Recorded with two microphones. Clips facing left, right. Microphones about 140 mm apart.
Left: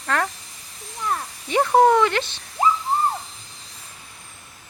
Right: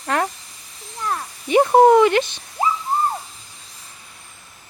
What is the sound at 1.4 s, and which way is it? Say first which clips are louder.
Speech: right 4 dB; 15° right (ahead or behind).